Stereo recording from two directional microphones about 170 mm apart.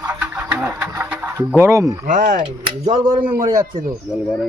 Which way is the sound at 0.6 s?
10° right (ahead or behind).